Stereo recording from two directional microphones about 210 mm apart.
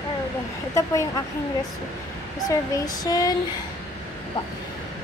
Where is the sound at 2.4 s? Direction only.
20° left (ahead or behind).